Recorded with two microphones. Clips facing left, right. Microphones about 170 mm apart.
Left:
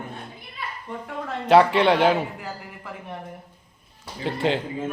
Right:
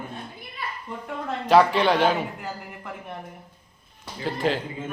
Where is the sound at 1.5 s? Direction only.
30° left (ahead or behind).